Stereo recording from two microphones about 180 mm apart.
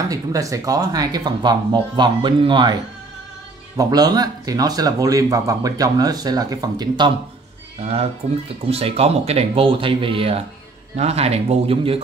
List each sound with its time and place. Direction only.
0.1 s speech: 20° right (ahead or behind)
7.8 s speech: 35° right (ahead or behind)